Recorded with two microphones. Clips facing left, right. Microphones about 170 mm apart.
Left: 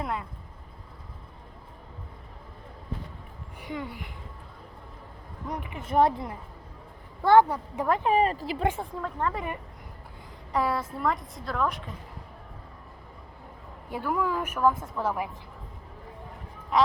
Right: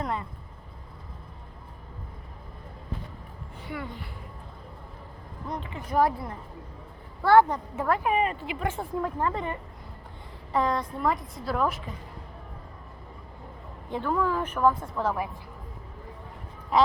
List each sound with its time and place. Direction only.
0.0 s speech: 5° left (ahead or behind)
3.6 s a woman's voice: 15° left (ahead or behind)
5.5 s a woman's voice: 15° left (ahead or behind)
8.0 s speech: 35° left (ahead or behind)
8.8 s a woman's voice: 10° right (ahead or behind)
9.3 s a woman's voice: 10° left (ahead or behind)
13.9 s a woman's voice: 10° left (ahead or behind)